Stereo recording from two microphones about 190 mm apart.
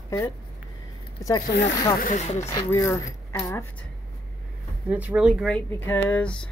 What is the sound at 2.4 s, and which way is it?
Speech, 15° left (ahead or behind).